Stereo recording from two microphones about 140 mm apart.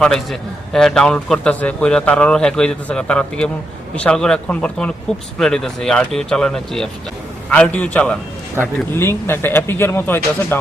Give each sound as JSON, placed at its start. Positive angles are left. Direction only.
{"t": 0.0, "sound": "a man's voice", "side_deg": 5}